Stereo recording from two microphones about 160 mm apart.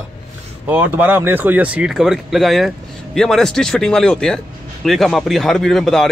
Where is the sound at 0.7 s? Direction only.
10° right (ahead or behind).